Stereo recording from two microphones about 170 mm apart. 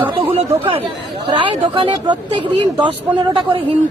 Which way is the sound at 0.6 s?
35° right (ahead or behind).